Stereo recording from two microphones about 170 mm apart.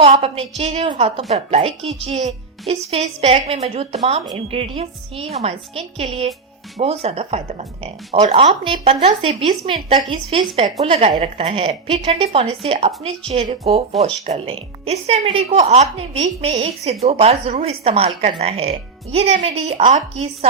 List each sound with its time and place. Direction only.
0.0 s a woman's voice: 35° right (ahead or behind)